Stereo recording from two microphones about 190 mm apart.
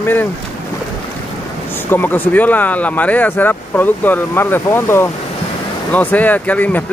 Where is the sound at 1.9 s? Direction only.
10° left (ahead or behind).